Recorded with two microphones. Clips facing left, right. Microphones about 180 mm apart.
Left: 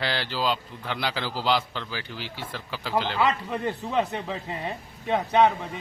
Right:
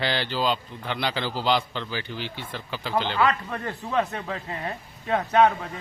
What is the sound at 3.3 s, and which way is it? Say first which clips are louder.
A man's voice: left 1 dB; 20° left (ahead or behind).